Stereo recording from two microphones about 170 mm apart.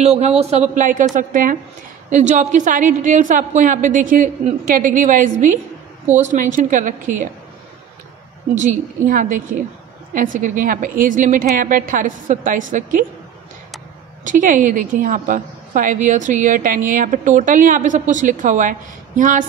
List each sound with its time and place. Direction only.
0.0 s a woman's voice: 40° right (ahead or behind)
8.5 s a woman's voice: 50° right (ahead or behind)
14.2 s a woman's voice: 50° right (ahead or behind)